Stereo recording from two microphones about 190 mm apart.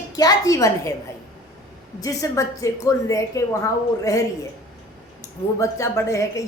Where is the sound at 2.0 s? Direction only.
15° left (ahead or behind).